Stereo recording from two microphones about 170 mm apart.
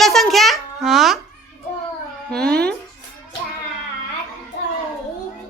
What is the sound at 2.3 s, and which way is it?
Speech, 5° left (ahead or behind).